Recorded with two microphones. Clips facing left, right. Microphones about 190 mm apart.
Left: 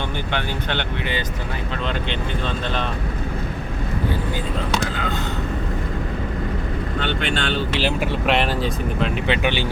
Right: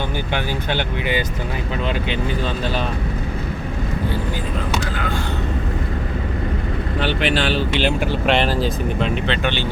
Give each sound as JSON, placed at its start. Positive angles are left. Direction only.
{"t": 0.3, "sound": "speech", "side_deg": -10}
{"t": 7.3, "sound": "speech", "side_deg": 0}
{"t": 9.2, "sound": "speech", "side_deg": 10}